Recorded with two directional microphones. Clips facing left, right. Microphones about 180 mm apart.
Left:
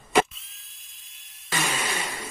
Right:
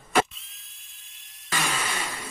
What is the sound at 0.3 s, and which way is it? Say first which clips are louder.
Drill: even; centre (ahead or behind).